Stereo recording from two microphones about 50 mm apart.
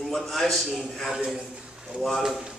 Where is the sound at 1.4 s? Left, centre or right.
Centre.